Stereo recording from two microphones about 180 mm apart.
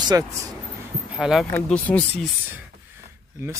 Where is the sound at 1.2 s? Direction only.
Centre (ahead or behind).